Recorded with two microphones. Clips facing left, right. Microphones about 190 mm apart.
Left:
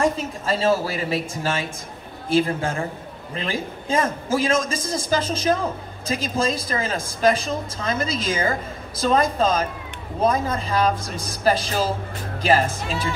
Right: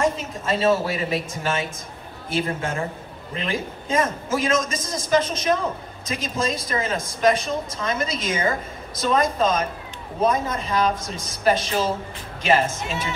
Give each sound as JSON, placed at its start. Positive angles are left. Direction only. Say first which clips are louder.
{"t": 0.0, "sound": "a woman's voice", "louder": "left 1 dB", "side_deg": 30}